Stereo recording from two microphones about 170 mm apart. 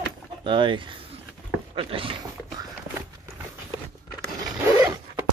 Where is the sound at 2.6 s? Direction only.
20° right (ahead or behind).